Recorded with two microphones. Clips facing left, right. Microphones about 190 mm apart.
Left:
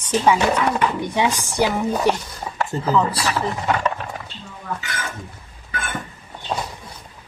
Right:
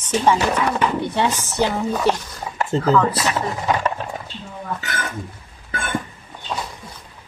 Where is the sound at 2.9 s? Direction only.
30° left (ahead or behind).